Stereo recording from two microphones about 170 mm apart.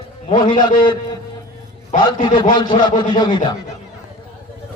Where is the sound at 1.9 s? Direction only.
45° left (ahead or behind).